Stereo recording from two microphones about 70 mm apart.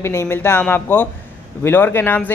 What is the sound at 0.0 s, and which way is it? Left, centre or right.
A man's voice, left.